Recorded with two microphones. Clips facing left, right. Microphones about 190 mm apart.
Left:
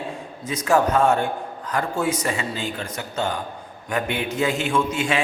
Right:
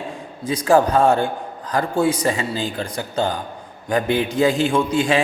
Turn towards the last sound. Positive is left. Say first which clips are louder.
# right 4 dB
turn(degrees=-35)  # may be behind; listen again after turning